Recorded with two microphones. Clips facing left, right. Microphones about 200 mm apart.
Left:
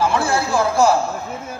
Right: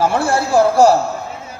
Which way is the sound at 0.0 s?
40° right (ahead or behind).